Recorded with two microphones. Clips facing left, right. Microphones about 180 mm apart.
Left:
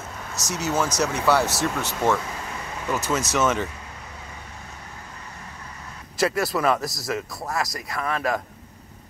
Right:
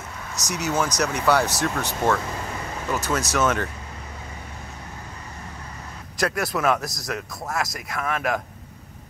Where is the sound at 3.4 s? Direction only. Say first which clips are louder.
Even; centre (ahead or behind).